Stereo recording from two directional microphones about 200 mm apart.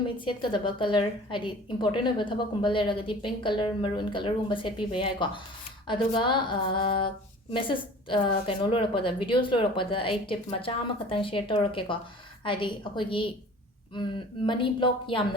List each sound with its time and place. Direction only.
0.3 s a woman's voice: 25° left (ahead or behind)